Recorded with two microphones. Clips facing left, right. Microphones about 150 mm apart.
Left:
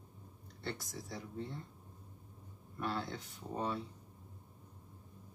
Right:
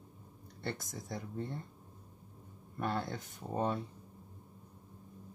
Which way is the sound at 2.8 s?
50° right (ahead or behind).